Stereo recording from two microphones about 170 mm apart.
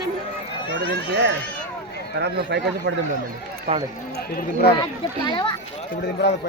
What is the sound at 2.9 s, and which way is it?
Speech, 90° right.